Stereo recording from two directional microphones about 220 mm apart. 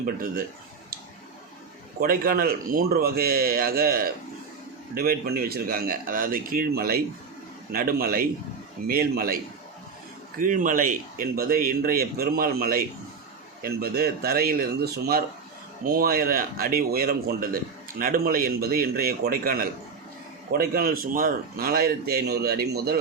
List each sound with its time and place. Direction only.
0.0 s speech: 40° right (ahead or behind)
2.0 s a man's voice: 40° right (ahead or behind)